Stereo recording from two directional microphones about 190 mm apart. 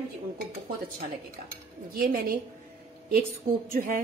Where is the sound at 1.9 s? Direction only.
50° right (ahead or behind).